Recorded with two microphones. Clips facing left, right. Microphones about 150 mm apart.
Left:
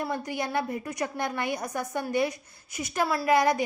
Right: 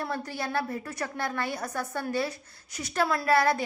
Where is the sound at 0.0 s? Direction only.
15° left (ahead or behind).